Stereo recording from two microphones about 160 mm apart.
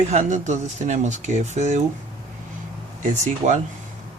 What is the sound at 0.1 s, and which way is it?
Speech, 45° right (ahead or behind).